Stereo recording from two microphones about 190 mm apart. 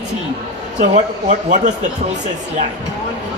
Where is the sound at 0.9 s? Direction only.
40° right (ahead or behind).